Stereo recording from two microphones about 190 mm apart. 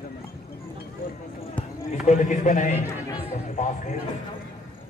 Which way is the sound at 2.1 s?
40° left (ahead or behind).